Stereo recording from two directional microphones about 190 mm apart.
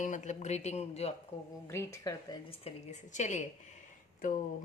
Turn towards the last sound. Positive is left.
turn(degrees=40)  # may be behind; listen again after turning